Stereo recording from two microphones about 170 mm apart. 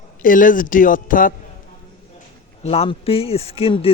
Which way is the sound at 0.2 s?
50° left (ahead or behind).